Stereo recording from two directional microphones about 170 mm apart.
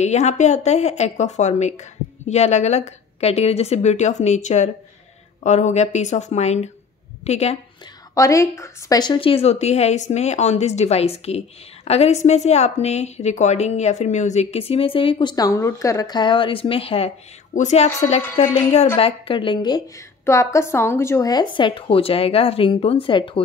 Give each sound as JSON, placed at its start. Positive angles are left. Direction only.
{"t": 0.0, "sound": "a woman's voice", "side_deg": 40}
{"t": 8.1, "sound": "a woman's voice", "side_deg": 20}
{"t": 20.2, "sound": "speech", "side_deg": 15}